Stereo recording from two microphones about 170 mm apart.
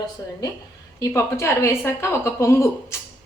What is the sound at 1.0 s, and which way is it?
A woman's voice, 15° left (ahead or behind).